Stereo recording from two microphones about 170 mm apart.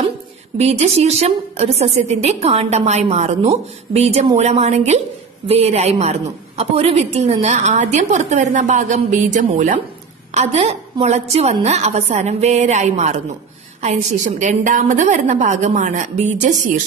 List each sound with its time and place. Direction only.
0.6 s a woman's voice: 40° right (ahead or behind)